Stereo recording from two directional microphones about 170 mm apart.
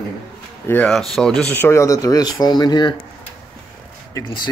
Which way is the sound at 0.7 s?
5° left (ahead or behind).